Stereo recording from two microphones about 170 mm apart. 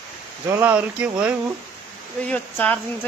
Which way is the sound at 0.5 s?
10° right (ahead or behind).